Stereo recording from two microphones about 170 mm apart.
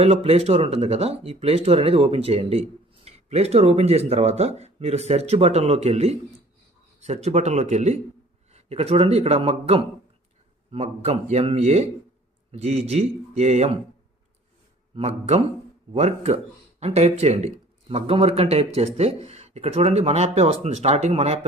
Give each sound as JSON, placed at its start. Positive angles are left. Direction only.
{"t": 0.0, "sound": "speech", "side_deg": -35}
{"t": 14.9, "sound": "speech", "side_deg": -35}